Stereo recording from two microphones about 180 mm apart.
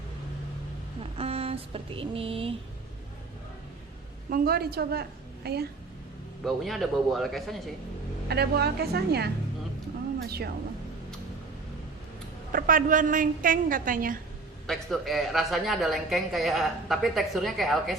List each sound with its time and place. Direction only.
1.1 s a sound: 35° right (ahead or behind)
4.3 s a woman's voice: 60° right (ahead or behind)
6.4 s a woman's voice: centre (ahead or behind)
8.3 s a woman's voice: 65° right (ahead or behind)
12.5 s a woman's voice: 50° right (ahead or behind)
14.7 s a woman's voice: centre (ahead or behind)